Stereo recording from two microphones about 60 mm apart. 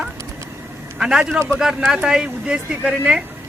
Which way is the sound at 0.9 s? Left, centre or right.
Centre.